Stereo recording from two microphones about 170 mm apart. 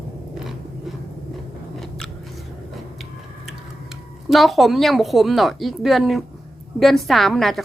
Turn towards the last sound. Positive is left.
turn(degrees=0)  # may be behind; listen again after turning